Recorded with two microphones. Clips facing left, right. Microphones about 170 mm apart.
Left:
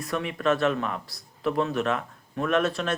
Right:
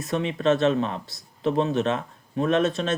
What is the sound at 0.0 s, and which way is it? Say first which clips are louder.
Speech: right 3 dB; 25° right (ahead or behind).